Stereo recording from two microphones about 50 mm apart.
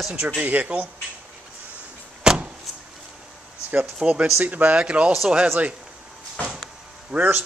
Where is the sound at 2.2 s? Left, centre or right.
Right.